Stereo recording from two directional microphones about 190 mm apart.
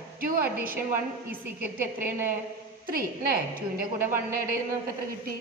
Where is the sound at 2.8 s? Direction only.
50° right (ahead or behind).